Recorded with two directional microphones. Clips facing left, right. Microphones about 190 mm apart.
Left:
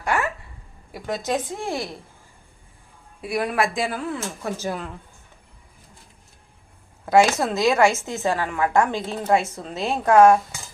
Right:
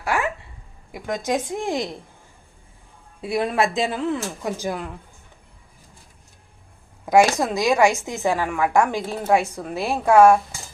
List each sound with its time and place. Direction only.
0.0 s a sound: 5° right (ahead or behind)
0.9 s a woman's voice: 15° right (ahead or behind)
3.2 s speech: 25° right (ahead or behind)
7.0 s a woman's voice: 15° right (ahead or behind)